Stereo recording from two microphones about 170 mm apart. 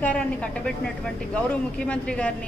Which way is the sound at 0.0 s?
5° left (ahead or behind).